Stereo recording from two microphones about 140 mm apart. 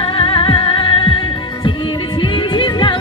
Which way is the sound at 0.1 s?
40° left (ahead or behind).